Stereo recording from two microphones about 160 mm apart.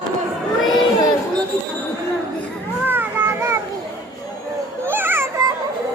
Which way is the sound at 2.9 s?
15° right (ahead or behind).